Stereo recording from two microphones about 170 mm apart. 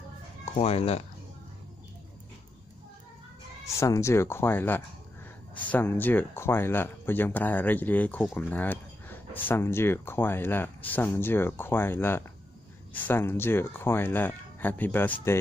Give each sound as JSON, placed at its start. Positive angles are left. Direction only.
{"t": 0.6, "sound": "speech", "side_deg": 35}
{"t": 3.8, "sound": "speech", "side_deg": 15}